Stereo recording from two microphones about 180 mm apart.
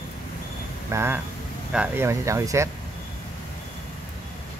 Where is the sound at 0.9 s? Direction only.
15° right (ahead or behind).